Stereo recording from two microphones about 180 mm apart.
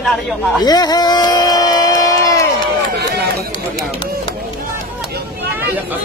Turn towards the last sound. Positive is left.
turn(degrees=-10)  # may be behind; listen again after turning